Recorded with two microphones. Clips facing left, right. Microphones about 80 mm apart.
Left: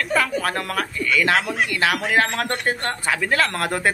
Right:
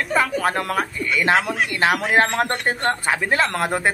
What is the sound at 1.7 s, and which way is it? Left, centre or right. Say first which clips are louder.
Speech: right 3 dB; right.